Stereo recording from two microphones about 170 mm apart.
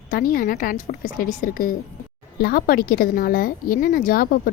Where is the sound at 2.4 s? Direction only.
65° left (ahead or behind).